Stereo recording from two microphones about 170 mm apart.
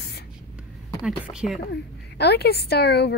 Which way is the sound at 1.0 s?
5° right (ahead or behind).